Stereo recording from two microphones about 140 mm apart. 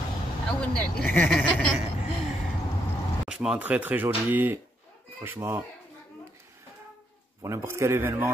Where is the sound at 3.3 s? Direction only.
5° right (ahead or behind).